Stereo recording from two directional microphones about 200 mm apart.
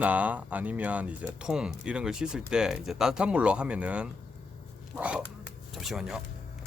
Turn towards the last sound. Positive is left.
turn(degrees=-5)  # may be behind; listen again after turning